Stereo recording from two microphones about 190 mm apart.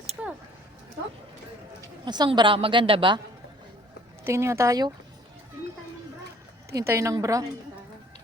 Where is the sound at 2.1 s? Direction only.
20° right (ahead or behind).